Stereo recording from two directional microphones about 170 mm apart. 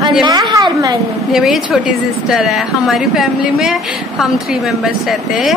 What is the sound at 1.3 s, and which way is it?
Speech, centre (ahead or behind).